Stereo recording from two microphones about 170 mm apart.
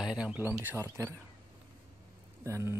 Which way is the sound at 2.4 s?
15° right (ahead or behind).